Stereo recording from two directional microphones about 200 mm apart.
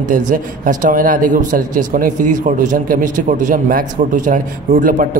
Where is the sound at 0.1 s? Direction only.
40° right (ahead or behind).